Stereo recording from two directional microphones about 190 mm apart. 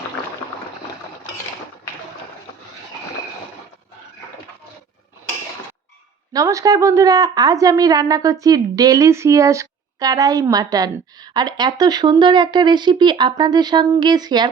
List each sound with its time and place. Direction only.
6.3 s a woman's voice: 15° right (ahead or behind)